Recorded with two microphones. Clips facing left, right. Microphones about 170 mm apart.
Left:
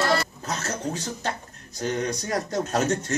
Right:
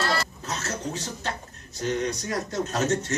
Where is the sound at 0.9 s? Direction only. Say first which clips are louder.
Left 2 dB; 40° left (ahead or behind).